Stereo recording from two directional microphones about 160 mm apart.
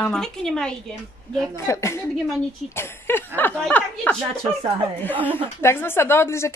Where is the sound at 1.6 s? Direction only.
20° left (ahead or behind).